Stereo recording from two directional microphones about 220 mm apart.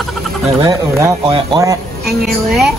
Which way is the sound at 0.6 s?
15° right (ahead or behind).